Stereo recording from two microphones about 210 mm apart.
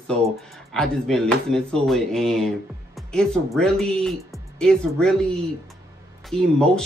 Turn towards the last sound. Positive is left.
turn(degrees=0)  # may be behind; listen again after turning